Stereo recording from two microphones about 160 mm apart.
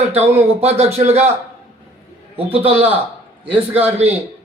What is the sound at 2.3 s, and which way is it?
Speech, 35° right (ahead or behind).